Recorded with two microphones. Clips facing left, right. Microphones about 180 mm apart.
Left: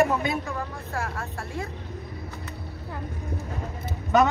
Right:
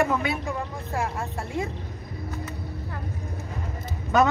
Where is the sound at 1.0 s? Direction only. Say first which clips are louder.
Right 3 dB; 20° right (ahead or behind).